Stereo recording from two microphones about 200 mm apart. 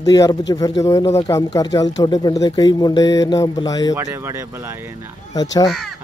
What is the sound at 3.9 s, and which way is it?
Speech, 10° right (ahead or behind).